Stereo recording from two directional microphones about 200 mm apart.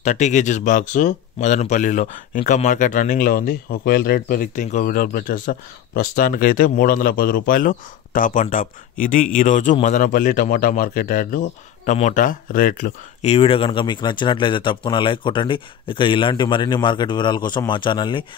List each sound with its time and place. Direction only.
0.0 s speech: 35° left (ahead or behind)